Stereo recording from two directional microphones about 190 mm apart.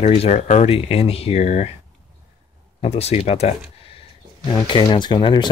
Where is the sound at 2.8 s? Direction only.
35° left (ahead or behind).